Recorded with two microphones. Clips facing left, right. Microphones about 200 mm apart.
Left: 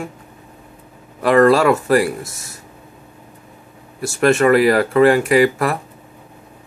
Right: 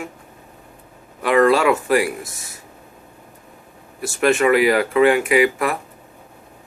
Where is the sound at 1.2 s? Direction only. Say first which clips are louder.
Left 3 dB; 45° left (ahead or behind).